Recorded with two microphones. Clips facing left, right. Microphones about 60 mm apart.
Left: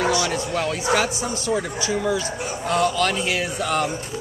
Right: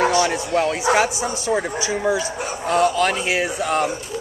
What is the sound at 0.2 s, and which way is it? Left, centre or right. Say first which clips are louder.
Speech: right 4 dB; right.